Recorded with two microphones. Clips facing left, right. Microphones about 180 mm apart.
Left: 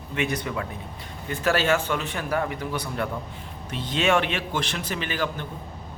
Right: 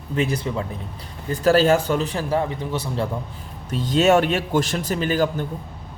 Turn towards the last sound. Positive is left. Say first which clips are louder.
# right 7 dB
turn(degrees=-40)  # may be behind; listen again after turning